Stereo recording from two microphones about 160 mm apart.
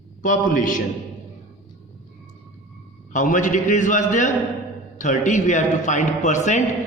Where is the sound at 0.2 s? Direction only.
55° left (ahead or behind).